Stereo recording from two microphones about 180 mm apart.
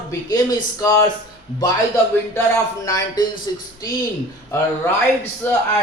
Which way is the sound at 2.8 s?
20° left (ahead or behind).